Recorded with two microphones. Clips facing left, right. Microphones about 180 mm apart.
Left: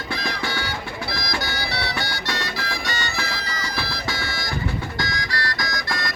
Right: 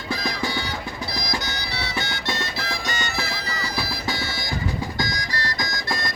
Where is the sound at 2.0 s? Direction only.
20° right (ahead or behind).